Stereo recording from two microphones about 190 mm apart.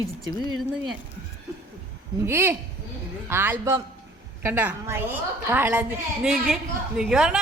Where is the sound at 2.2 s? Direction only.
10° right (ahead or behind).